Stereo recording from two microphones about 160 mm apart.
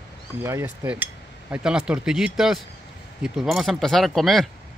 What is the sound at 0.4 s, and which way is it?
Speech, 15° right (ahead or behind).